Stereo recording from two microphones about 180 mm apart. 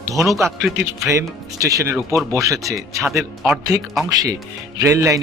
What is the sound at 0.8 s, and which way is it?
Speech, 15° right (ahead or behind).